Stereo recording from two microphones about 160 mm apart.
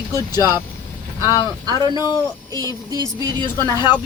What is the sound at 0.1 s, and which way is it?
Speech, 25° left (ahead or behind).